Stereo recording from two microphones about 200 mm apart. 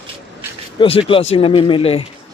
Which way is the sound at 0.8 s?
25° left (ahead or behind).